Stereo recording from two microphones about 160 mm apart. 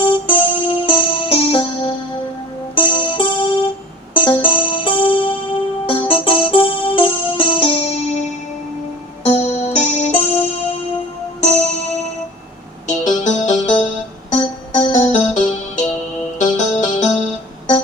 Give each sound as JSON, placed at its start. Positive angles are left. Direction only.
{"t": 0.0, "sound": "music", "side_deg": 30}
{"t": 9.2, "sound": "music", "side_deg": 45}
{"t": 12.9, "sound": "music", "side_deg": 50}